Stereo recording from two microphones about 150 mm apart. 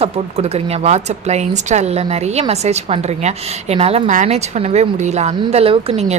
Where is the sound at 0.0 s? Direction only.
45° right (ahead or behind).